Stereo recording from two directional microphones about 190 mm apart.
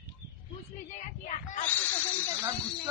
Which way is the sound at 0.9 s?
40° left (ahead or behind).